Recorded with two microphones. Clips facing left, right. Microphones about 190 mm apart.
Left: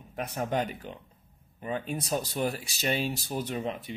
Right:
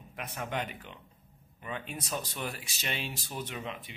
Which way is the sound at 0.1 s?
40° left (ahead or behind).